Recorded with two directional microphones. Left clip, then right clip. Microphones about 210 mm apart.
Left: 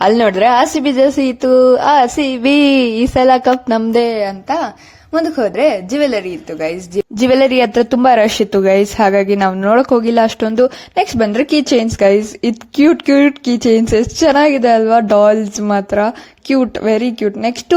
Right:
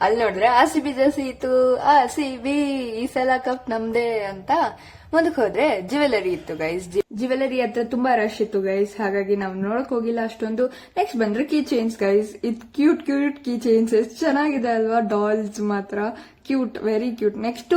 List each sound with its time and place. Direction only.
0.0 s a woman's voice: 35° left (ahead or behind); by 7.0 s 15° left (ahead or behind)
7.2 s speech: 45° left (ahead or behind)